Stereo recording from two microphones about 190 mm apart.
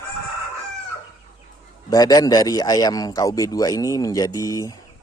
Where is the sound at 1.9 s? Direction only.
20° left (ahead or behind).